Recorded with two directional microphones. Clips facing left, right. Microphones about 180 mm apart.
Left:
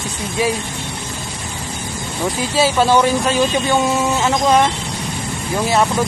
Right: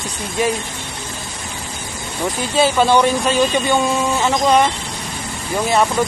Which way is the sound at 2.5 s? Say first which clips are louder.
Even; 5° left (ahead or behind).